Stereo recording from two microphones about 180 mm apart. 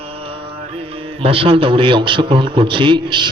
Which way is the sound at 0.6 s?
35° right (ahead or behind).